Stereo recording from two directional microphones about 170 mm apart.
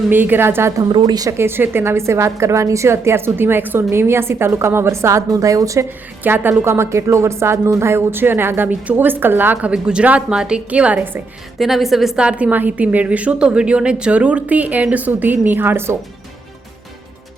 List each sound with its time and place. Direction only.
0.1 s a woman's voice: 10° right (ahead or behind)
0.9 s a woman's voice: 25° right (ahead or behind)